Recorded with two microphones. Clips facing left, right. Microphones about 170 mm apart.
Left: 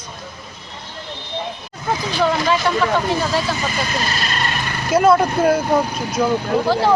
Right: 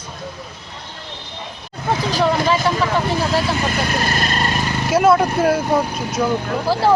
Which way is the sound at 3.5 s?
60° right (ahead or behind).